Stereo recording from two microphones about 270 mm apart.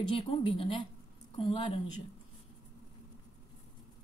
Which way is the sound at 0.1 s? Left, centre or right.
Centre.